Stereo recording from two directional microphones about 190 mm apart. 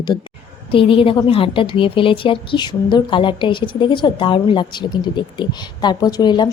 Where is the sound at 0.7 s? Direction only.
30° left (ahead or behind).